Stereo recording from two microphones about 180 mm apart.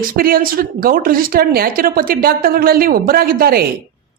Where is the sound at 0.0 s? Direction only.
55° right (ahead or behind).